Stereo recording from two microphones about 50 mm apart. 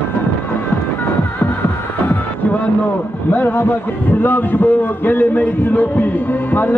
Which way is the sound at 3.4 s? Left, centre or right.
Left.